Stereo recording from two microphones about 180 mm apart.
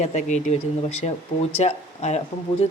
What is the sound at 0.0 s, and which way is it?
Speech, 40° left (ahead or behind).